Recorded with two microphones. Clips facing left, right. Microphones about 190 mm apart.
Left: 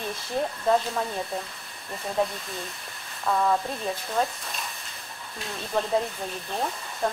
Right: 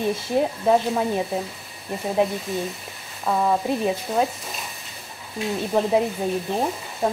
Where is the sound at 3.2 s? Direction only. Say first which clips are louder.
Right 3 dB; 15° right (ahead or behind).